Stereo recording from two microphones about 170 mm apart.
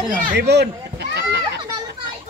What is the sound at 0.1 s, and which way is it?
Speech, 55° right (ahead or behind).